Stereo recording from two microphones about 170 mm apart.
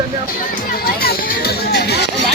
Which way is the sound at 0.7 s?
65° left (ahead or behind).